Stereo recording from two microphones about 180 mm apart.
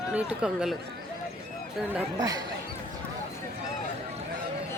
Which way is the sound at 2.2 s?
20° right (ahead or behind).